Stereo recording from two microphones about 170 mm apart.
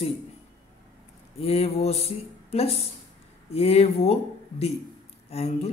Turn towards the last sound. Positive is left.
turn(degrees=40)  # may be behind; listen again after turning